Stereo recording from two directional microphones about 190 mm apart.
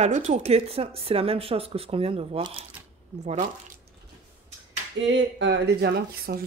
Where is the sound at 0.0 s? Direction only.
35° right (ahead or behind).